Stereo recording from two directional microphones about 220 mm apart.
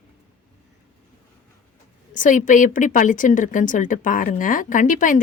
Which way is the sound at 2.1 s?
35° left (ahead or behind).